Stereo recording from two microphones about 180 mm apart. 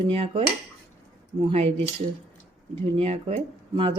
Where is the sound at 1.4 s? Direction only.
40° right (ahead or behind).